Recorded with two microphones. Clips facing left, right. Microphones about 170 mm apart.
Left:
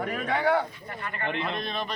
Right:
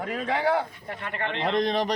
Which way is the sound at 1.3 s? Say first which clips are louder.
Right 7 dB; 90° right.